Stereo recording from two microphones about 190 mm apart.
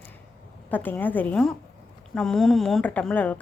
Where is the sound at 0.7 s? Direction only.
10° left (ahead or behind).